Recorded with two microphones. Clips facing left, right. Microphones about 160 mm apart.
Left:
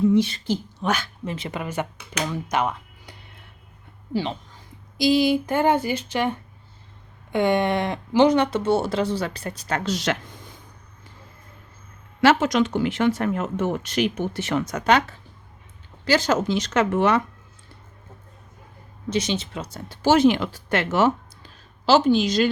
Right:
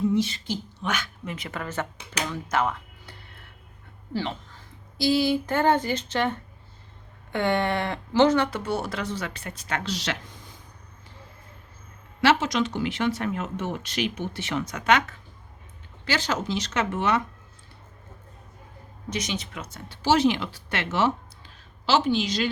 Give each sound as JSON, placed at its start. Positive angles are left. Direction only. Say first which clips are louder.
{"t": 0.1, "sound": "a woman's voice", "louder": "left 5 dB", "side_deg": 60}
{"t": 0.4, "sound": "a woman's voice", "louder": "left 6 dB", "side_deg": 40}
{"t": 12.2, "sound": "speech", "louder": "left 4 dB", "side_deg": 50}
{"t": 16.0, "sound": "speech", "louder": "left 7 dB", "side_deg": 45}
{"t": 19.1, "sound": "speech", "louder": "left 6 dB", "side_deg": 30}
{"t": 20.0, "sound": "speech", "louder": "left 4 dB", "side_deg": 50}